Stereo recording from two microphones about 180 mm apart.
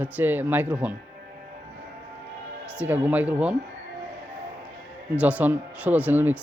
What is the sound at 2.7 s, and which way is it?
Speech, 10° right (ahead or behind).